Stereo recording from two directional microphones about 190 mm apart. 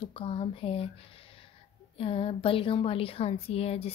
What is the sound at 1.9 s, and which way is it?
A woman's voice, 30° left (ahead or behind).